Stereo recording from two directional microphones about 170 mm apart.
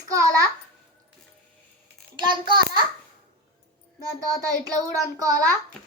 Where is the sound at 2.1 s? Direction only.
25° right (ahead or behind).